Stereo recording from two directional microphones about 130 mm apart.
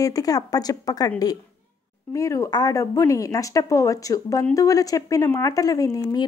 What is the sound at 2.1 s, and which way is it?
A woman's voice, 25° left (ahead or behind).